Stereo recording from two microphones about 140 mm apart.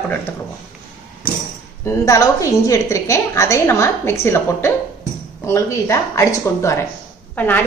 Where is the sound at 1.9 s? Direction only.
20° left (ahead or behind).